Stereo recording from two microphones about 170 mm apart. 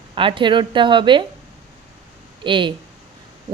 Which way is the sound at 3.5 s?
20° right (ahead or behind).